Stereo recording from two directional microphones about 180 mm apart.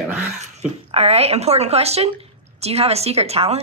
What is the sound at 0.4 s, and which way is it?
A woman's voice, 35° right (ahead or behind).